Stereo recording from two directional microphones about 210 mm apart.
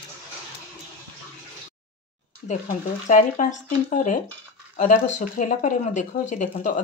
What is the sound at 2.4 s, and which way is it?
Speech, 40° left (ahead or behind).